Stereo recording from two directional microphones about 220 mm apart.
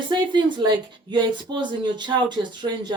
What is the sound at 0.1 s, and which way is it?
Speech, 20° right (ahead or behind).